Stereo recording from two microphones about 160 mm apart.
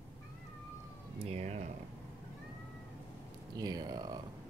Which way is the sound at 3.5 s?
25° right (ahead or behind).